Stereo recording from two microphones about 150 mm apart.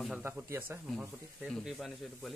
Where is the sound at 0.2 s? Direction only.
10° right (ahead or behind).